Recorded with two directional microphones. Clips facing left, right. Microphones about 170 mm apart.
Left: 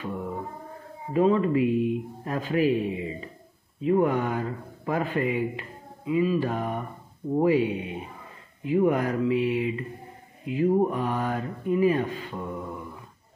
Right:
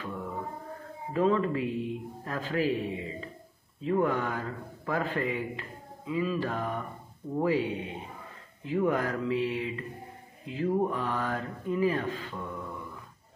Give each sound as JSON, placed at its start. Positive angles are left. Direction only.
{"t": 0.0, "sound": "music", "side_deg": 20}
{"t": 1.1, "sound": "speech", "side_deg": 15}